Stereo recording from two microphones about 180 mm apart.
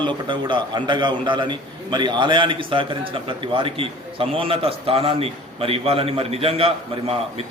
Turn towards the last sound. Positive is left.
turn(degrees=-30)  # may be behind; listen again after turning